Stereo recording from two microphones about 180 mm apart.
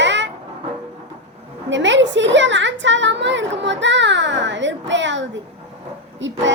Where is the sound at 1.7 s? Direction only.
90° right.